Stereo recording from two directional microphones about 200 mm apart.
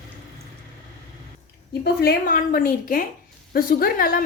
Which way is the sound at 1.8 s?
50° left (ahead or behind).